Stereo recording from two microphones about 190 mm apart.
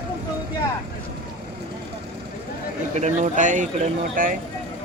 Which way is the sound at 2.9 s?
40° right (ahead or behind).